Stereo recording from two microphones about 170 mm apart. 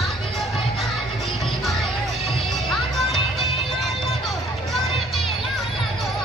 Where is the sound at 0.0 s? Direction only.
Centre (ahead or behind).